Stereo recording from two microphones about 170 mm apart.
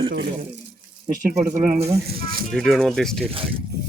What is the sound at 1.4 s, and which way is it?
Speech, 45° right (ahead or behind).